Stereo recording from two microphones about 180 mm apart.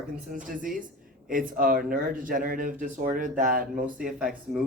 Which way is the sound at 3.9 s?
5° right (ahead or behind).